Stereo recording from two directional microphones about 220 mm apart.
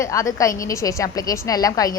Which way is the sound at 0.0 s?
15° left (ahead or behind).